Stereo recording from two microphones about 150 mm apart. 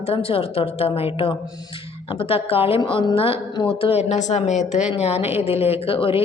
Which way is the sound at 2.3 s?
40° left (ahead or behind).